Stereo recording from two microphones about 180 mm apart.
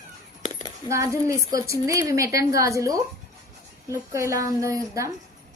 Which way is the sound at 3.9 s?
15° right (ahead or behind).